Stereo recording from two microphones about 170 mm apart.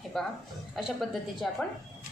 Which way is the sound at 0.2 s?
Centre (ahead or behind).